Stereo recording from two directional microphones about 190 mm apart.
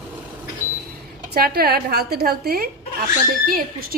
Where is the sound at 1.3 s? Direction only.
55° right (ahead or behind).